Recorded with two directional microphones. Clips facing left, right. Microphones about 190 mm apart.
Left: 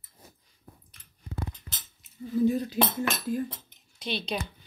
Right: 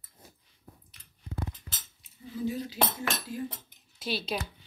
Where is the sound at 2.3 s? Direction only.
50° left (ahead or behind).